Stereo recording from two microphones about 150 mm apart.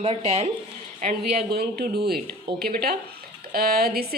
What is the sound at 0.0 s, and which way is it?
Speech, 45° right (ahead or behind).